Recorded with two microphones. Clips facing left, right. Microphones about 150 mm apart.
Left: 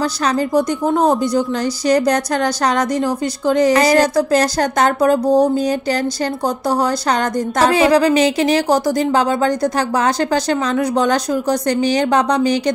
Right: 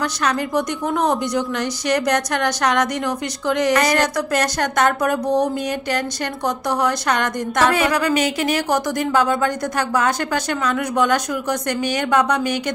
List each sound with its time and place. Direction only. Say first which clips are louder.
0.0 s a woman's voice: left 4 dB; 30° left (ahead or behind)